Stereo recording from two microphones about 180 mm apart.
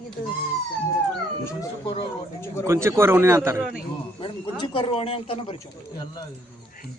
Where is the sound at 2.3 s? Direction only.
15° left (ahead or behind).